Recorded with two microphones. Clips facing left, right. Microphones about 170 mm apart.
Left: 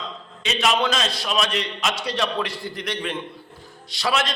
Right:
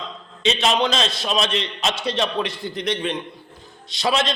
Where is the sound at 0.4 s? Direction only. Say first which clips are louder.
Right 2 dB; 25° right (ahead or behind).